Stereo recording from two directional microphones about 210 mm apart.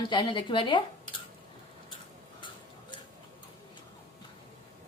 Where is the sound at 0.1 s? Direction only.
20° left (ahead or behind).